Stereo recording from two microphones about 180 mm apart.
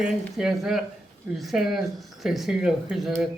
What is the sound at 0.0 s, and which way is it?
A man's voice, centre (ahead or behind).